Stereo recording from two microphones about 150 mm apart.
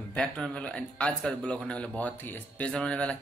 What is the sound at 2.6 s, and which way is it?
Speech, 5° left (ahead or behind).